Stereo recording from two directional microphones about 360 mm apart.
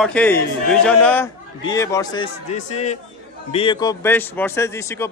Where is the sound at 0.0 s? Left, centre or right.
Centre.